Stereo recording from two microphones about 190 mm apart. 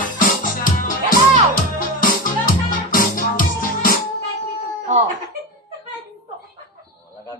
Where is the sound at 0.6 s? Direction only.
45° left (ahead or behind).